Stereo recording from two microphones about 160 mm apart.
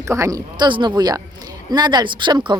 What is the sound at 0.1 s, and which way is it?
Speech, 20° right (ahead or behind).